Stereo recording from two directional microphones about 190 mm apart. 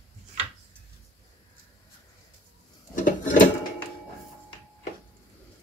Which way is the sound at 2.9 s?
45° left (ahead or behind).